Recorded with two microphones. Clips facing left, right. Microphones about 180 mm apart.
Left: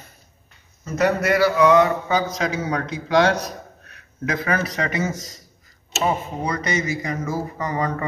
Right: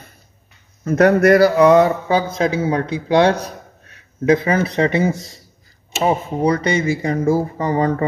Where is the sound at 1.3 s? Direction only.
35° right (ahead or behind).